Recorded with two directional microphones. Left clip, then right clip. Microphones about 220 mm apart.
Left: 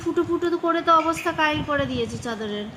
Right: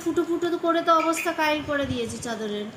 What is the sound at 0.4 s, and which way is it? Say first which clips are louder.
A woman's voice: even; 30° left (ahead or behind).